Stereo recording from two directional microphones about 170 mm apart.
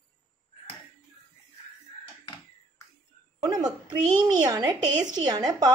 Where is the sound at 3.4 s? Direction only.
25° right (ahead or behind).